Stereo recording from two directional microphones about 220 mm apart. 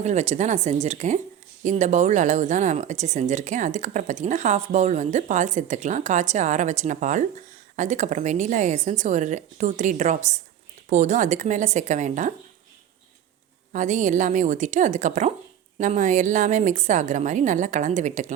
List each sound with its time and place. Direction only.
0.0 s speech: 30° right (ahead or behind)
13.7 s speech: 35° right (ahead or behind)